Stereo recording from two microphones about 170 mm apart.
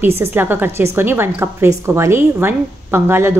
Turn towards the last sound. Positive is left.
turn(degrees=-15)  # may be behind; listen again after turning